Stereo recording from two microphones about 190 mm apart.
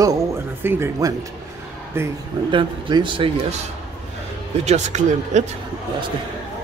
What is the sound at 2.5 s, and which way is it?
Speech, 25° right (ahead or behind).